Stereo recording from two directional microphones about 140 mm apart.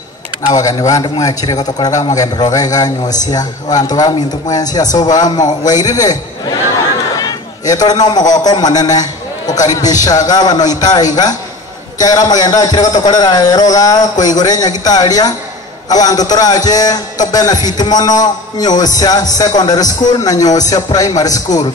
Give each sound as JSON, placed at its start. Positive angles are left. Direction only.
{"t": 0.5, "sound": "a man's voice", "side_deg": 25}
{"t": 7.2, "sound": "a sound", "side_deg": 25}
{"t": 8.5, "sound": "a man's voice", "side_deg": 30}